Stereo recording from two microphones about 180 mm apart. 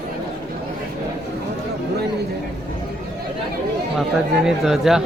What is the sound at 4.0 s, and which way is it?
Speech, centre (ahead or behind).